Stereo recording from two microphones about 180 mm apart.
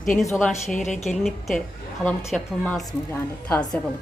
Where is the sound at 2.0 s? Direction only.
10° left (ahead or behind).